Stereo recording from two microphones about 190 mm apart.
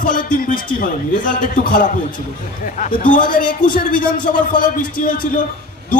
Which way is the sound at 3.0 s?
45° left (ahead or behind).